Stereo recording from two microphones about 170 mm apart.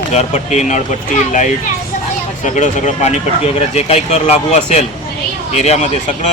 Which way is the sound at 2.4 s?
45° left (ahead or behind).